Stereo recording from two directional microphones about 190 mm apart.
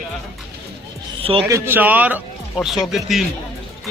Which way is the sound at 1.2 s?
30° right (ahead or behind).